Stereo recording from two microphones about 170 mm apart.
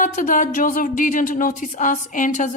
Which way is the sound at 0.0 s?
50° left (ahead or behind).